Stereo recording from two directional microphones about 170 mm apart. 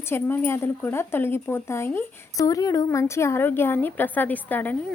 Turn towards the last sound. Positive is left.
turn(degrees=10)  # may be behind; listen again after turning